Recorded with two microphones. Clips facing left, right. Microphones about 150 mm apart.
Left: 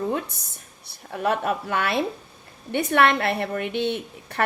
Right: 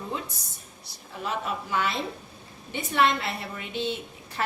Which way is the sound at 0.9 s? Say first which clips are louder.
Left 9 dB; 60° left (ahead or behind).